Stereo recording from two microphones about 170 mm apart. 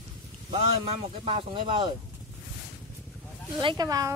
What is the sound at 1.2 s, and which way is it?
Speech, 35° right (ahead or behind).